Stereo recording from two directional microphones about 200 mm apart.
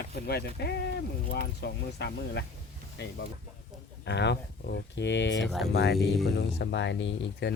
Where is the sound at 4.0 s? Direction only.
60° left (ahead or behind).